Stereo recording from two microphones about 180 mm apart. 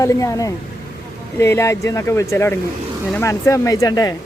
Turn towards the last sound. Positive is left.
turn(degrees=20)  # may be behind; listen again after turning